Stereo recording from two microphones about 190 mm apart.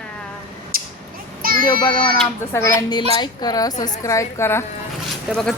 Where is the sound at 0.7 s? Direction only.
50° right (ahead or behind).